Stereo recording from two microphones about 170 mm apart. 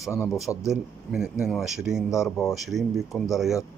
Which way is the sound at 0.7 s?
5° right (ahead or behind).